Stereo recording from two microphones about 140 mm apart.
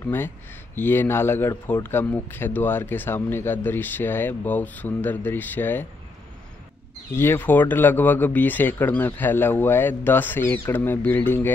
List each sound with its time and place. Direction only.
0.0 s a man's voice: 15° left (ahead or behind)
7.2 s a man's voice: 15° left (ahead or behind)